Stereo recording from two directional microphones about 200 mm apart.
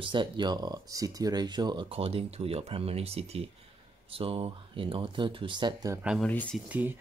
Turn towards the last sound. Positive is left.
turn(degrees=-10)  # may be behind; listen again after turning